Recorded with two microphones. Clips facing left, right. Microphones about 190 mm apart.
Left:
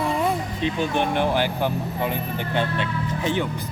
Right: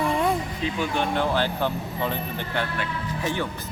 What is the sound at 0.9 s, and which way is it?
Speech, 15° left (ahead or behind).